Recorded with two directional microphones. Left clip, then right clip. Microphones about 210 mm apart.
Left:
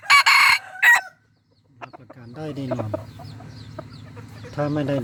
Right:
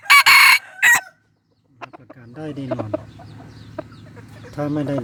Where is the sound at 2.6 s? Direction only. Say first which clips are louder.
Right 3 dB; 10° right (ahead or behind).